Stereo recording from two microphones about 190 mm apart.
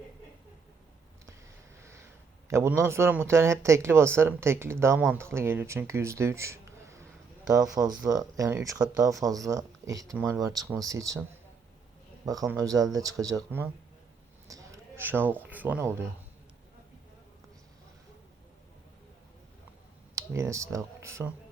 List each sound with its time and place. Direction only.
1.8 s a sound: 15° right (ahead or behind)
2.5 s speech: 15° right (ahead or behind)
20.1 s speech: 15° right (ahead or behind)